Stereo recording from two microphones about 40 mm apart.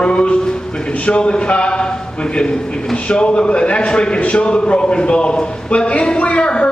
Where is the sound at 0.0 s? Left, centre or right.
Left.